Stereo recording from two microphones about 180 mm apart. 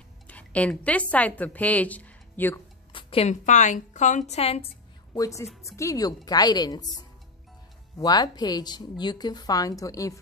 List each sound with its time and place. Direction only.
0.3 s a woman's voice: 10° left (ahead or behind)
2.9 s a woman's voice: 30° left (ahead or behind)
5.1 s speech: 20° left (ahead or behind)
8.0 s speech: 25° left (ahead or behind)